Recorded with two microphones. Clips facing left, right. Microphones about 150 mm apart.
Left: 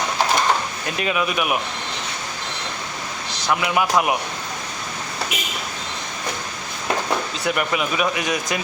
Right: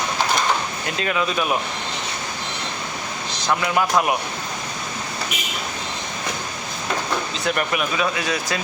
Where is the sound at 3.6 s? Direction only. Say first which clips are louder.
Even; 15° left (ahead or behind).